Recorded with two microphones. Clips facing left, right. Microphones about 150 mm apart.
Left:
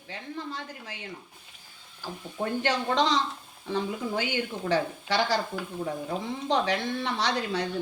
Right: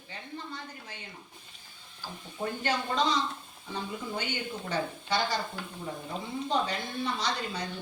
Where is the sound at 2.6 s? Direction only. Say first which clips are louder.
Left 3 dB; 90° left.